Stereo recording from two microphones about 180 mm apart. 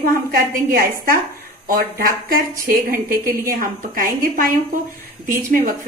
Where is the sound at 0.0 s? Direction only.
55° right (ahead or behind).